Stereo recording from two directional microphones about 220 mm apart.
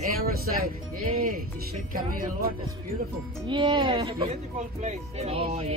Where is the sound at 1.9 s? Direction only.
40° right (ahead or behind).